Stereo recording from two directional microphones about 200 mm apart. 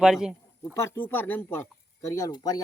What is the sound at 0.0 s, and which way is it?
Speech, 5° right (ahead or behind).